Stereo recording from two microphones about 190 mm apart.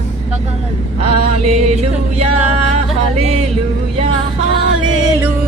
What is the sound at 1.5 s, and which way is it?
Music, 35° right (ahead or behind).